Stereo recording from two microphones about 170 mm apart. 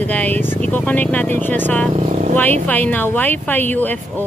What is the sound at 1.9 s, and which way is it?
Speech, 40° right (ahead or behind).